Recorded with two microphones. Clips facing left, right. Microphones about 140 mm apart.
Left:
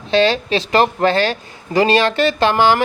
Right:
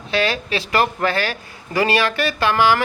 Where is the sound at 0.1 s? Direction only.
25° left (ahead or behind).